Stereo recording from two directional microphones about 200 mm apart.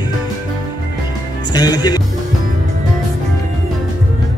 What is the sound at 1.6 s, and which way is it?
Music, 20° left (ahead or behind).